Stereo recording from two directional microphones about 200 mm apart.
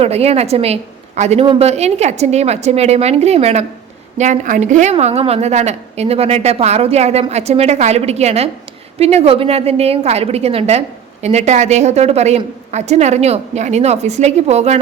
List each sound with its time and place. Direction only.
0.0 s a woman's voice: 30° right (ahead or behind)